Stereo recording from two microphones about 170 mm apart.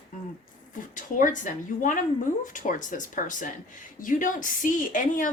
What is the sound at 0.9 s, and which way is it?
Speech, 50° left (ahead or behind).